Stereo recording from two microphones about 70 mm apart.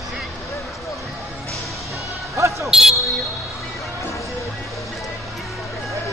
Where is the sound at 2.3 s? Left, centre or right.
Right.